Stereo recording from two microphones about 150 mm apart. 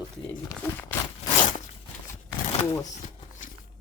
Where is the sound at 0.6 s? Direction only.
10° left (ahead or behind).